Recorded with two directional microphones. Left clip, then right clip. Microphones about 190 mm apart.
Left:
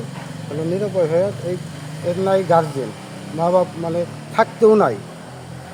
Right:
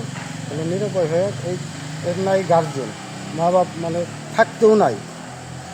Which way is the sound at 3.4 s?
20° left (ahead or behind).